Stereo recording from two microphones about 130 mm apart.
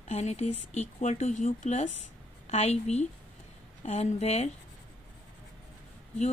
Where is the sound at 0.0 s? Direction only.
55° left (ahead or behind).